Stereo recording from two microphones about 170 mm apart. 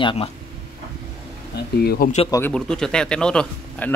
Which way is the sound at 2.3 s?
10° left (ahead or behind).